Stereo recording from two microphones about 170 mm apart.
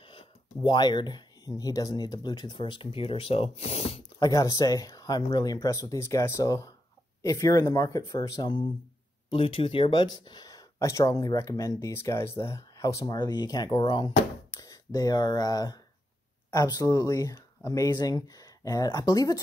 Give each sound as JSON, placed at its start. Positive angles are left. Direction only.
{"t": 0.0, "sound": "speech", "side_deg": 30}
{"t": 4.0, "sound": "speech", "side_deg": 20}